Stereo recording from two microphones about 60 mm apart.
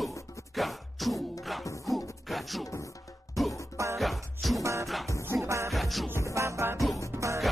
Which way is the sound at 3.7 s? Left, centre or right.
Right.